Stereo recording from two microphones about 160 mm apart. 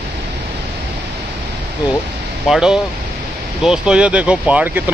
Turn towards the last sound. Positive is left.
turn(degrees=-10)  # may be behind; listen again after turning